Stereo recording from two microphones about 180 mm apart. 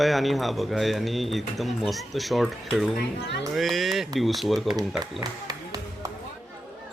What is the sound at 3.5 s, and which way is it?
Speech, centre (ahead or behind).